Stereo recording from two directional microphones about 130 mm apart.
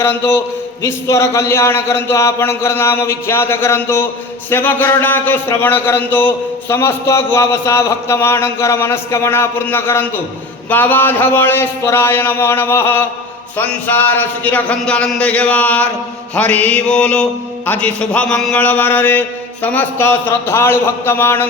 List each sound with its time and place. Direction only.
0.0 s speech: 15° left (ahead or behind)